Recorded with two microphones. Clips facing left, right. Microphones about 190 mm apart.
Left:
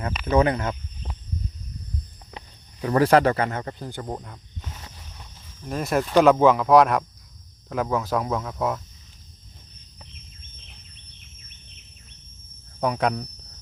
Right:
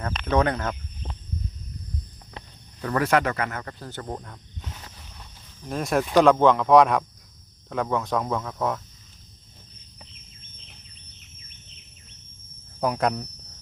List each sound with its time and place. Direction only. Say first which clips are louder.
0.0 s speech: left 2 dB; 5° left (ahead or behind)
2.8 s speech: left 5 dB; 25° left (ahead or behind); by 8.8 s 5° left (ahead or behind)
12.8 s speech: left 1 dB; centre (ahead or behind)